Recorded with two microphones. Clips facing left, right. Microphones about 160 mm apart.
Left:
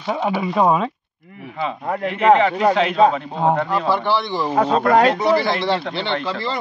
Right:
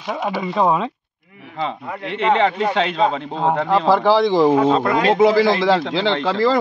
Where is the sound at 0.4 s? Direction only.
5° left (ahead or behind).